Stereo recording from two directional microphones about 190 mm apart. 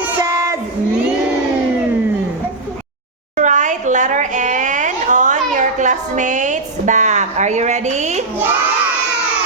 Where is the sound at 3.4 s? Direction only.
40° right (ahead or behind).